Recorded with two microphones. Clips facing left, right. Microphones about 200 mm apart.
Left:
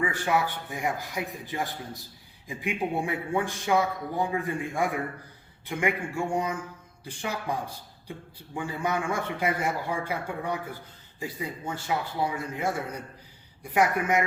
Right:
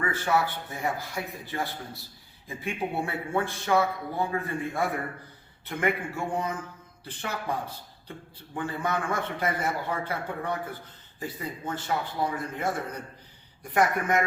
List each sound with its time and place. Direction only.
0.0 s a man's voice: 15° left (ahead or behind)
8.5 s a man's voice: 10° left (ahead or behind)